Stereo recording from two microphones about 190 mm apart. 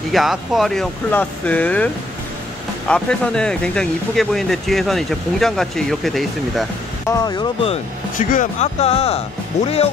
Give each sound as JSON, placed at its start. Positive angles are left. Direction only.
{"t": 0.1, "sound": "speech", "side_deg": 0}
{"t": 2.9, "sound": "speech", "side_deg": 5}
{"t": 7.1, "sound": "speech", "side_deg": 20}
{"t": 7.7, "sound": "speech", "side_deg": 45}